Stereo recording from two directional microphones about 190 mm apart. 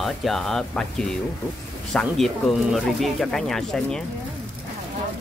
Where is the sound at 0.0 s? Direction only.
Centre (ahead or behind).